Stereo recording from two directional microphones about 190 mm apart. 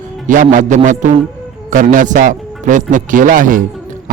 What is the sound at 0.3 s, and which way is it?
Speech, 45° right (ahead or behind).